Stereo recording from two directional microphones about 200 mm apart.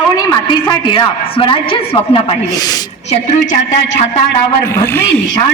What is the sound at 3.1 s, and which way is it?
A man's voice, 40° left (ahead or behind).